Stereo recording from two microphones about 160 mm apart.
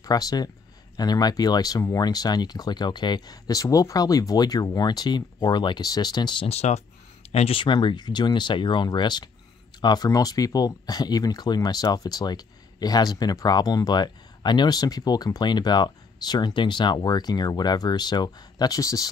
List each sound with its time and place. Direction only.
0.0 s speech: 25° left (ahead or behind)